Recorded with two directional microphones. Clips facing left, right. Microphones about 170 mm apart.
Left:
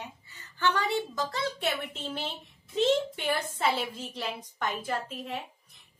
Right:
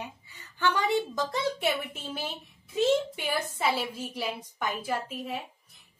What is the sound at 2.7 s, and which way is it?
A woman's voice, 10° right (ahead or behind).